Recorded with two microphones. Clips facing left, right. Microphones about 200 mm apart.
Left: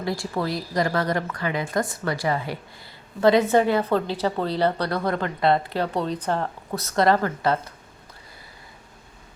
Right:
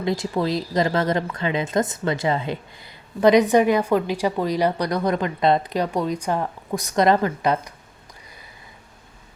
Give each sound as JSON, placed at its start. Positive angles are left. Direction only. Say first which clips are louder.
{"t": 0.0, "sound": "a woman's voice", "louder": "right 4 dB", "side_deg": -20}